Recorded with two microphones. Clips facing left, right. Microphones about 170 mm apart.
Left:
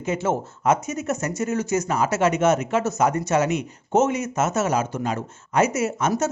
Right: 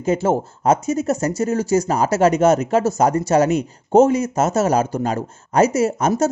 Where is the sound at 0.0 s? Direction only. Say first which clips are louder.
Right 6 dB; 35° right (ahead or behind).